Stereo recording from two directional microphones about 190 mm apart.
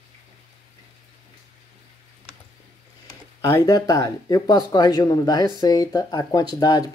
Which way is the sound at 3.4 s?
15° left (ahead or behind).